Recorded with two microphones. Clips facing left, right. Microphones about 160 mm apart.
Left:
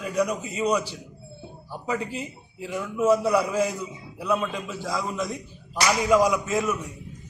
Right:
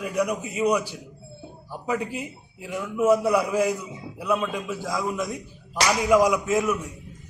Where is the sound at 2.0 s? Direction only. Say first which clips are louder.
Right 1 dB; 20° right (ahead or behind).